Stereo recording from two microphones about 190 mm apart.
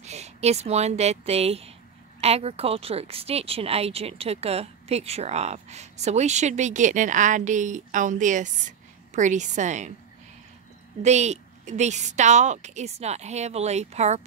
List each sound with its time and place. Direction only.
0.0 s a woman's voice: 35° right (ahead or behind)
11.0 s a woman's voice: 35° right (ahead or behind)